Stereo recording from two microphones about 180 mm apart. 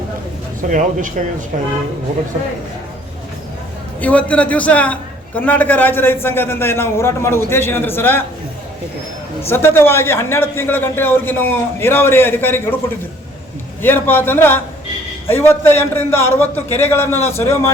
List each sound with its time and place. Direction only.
0.7 s speech: 45° right (ahead or behind)
4.0 s a man's voice: 5° left (ahead or behind)
9.5 s a man's voice: 15° left (ahead or behind)
13.8 s a man's voice: 10° left (ahead or behind)